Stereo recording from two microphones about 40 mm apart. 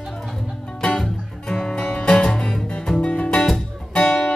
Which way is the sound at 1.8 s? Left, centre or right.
Left.